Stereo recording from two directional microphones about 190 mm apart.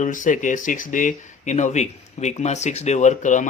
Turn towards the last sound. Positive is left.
turn(degrees=40)  # may be behind; listen again after turning